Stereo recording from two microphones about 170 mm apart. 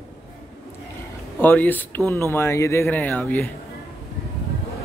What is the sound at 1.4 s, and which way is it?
Speech, 10° left (ahead or behind).